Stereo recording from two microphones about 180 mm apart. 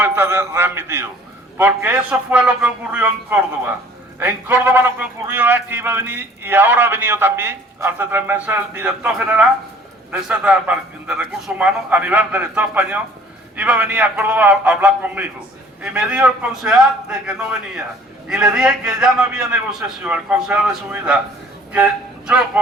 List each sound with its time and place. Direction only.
0.0 s a man's voice: 15° right (ahead or behind)
22.6 s speech: 5° right (ahead or behind)